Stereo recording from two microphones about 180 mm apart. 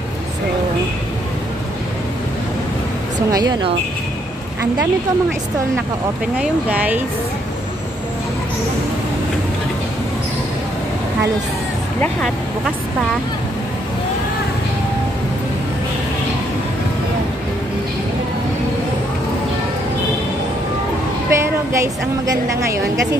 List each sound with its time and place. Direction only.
3.3 s a woman's voice: 20° right (ahead or behind)
6.3 s speech: 5° right (ahead or behind)
12.0 s speech: 5° left (ahead or behind)
21.3 s a woman's voice: 15° right (ahead or behind)